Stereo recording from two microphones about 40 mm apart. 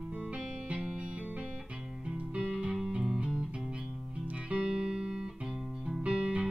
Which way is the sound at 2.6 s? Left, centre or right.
Centre.